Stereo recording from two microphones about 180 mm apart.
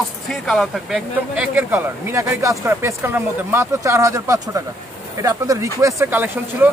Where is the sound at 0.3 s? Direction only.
Centre (ahead or behind).